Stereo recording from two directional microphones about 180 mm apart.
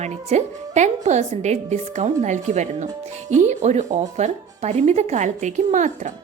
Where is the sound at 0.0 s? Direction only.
40° right (ahead or behind).